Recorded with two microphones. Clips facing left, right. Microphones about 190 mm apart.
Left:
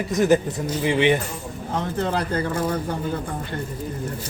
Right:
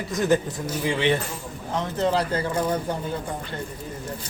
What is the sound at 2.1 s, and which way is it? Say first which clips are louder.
Speech: right 1 dB; 55° left (ahead or behind).